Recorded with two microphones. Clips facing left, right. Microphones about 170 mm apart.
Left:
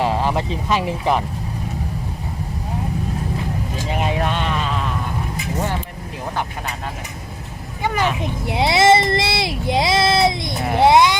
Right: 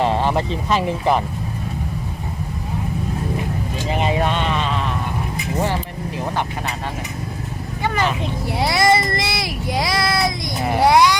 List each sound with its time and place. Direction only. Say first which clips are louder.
0.0 s speech: right 1 dB; centre (ahead or behind)
3.8 s speech: right 2 dB; centre (ahead or behind)
7.8 s speech: left 1 dB; 10° left (ahead or behind)
8.4 s speech: left 3 dB; 20° left (ahead or behind)